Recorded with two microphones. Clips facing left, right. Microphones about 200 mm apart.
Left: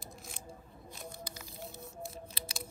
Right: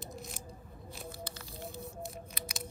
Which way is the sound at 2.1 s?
30° left (ahead or behind).